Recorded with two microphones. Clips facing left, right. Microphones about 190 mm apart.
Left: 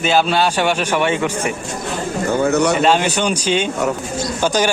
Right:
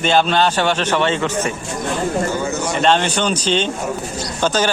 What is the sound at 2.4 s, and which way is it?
Speech, 65° left (ahead or behind).